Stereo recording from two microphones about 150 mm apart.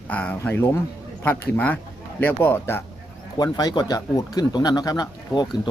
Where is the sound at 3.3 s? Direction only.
25° left (ahead or behind).